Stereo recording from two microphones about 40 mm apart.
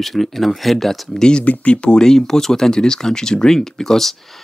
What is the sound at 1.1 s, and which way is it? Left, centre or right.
Speech, left.